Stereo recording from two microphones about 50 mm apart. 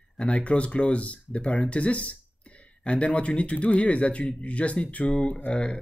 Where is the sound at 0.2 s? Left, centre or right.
Left.